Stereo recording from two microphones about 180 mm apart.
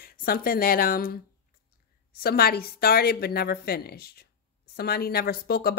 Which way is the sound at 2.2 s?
55° left (ahead or behind).